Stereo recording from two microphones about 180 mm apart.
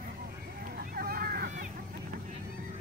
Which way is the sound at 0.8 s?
55° right (ahead or behind).